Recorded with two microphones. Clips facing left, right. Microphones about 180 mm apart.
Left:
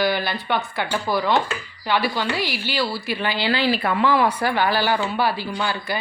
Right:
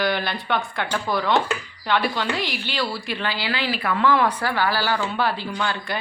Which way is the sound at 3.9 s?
10° left (ahead or behind).